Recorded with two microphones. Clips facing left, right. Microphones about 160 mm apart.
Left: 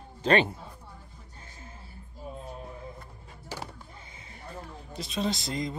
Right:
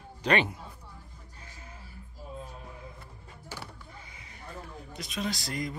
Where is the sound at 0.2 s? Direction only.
30° left (ahead or behind).